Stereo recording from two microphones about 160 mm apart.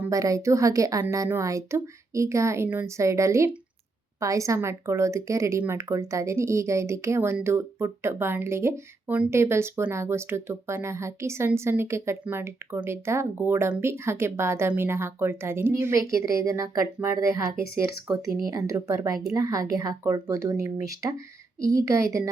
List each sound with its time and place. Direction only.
0.0 s a woman's voice: 20° right (ahead or behind)